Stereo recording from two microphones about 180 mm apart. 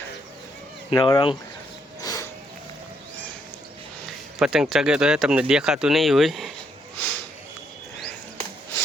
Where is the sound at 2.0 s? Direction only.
20° left (ahead or behind).